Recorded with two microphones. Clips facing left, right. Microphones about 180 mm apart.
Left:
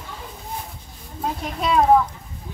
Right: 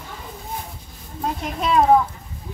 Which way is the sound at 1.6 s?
Centre (ahead or behind).